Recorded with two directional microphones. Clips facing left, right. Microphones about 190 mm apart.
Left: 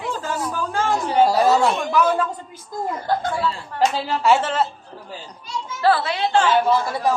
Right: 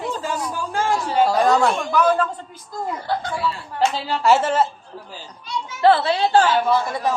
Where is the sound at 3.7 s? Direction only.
Centre (ahead or behind).